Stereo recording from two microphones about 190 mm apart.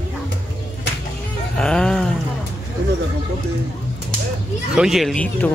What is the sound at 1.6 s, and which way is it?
Speech, 5° left (ahead or behind).